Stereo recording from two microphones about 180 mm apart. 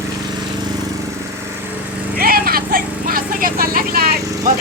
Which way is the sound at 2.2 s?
55° right (ahead or behind).